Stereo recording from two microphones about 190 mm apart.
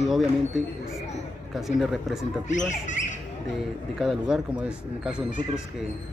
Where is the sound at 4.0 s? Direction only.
Centre (ahead or behind).